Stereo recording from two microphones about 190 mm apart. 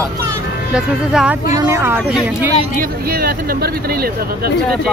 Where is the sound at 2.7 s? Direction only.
50° right (ahead or behind).